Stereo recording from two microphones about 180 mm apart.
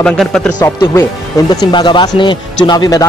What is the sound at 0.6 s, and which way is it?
Speech, 15° left (ahead or behind).